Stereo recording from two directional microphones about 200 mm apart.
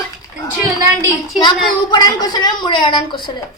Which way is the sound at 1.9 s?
20° left (ahead or behind).